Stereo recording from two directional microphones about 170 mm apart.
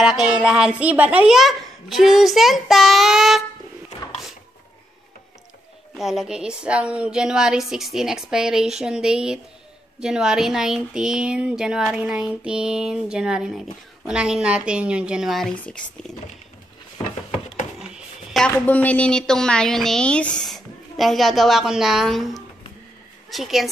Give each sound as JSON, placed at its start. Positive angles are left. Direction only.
{"t": 0.0, "sound": "a child's voice", "side_deg": -5}
{"t": 5.9, "sound": "speech", "side_deg": 0}
{"t": 17.7, "sound": "a sound", "side_deg": -5}
{"t": 18.5, "sound": "speech", "side_deg": 10}
{"t": 23.3, "sound": "speech", "side_deg": 0}